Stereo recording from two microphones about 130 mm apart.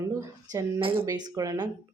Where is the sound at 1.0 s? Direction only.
30° right (ahead or behind).